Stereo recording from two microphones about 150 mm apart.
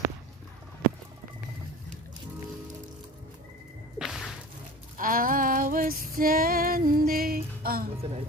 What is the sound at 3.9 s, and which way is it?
Whip, 5° right (ahead or behind).